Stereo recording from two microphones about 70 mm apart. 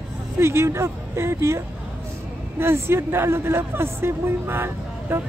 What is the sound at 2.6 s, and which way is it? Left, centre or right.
A woman's voice, right.